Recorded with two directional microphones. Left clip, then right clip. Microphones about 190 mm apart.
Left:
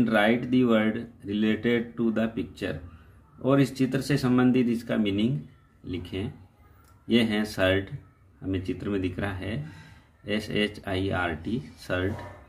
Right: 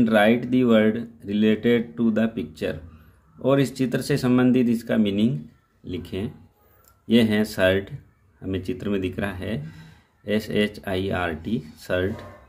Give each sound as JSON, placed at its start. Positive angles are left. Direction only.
{"t": 0.0, "sound": "speech", "side_deg": -20}